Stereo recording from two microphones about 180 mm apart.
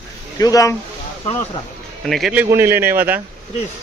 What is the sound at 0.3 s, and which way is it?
Speech, 20° left (ahead or behind).